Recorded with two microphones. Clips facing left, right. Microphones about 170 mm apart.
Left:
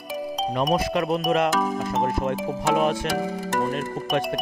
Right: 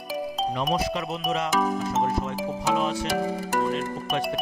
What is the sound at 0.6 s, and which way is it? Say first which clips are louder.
Speech: left 6 dB; 50° left (ahead or behind).